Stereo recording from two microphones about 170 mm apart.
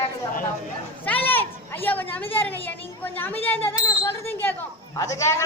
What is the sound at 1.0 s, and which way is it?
A woman's voice, 10° left (ahead or behind).